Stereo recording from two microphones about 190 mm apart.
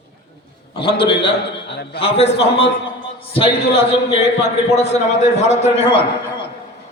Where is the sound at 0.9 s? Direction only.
30° left (ahead or behind).